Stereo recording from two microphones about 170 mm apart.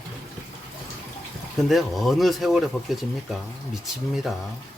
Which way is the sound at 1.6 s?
Centre (ahead or behind).